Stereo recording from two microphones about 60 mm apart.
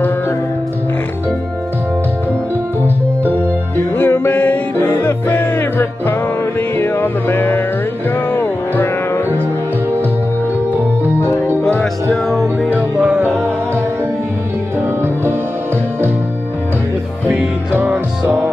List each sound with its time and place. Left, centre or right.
3.9 s music: left
11.1 s music: left
11.8 s music: centre
17.7 s music: right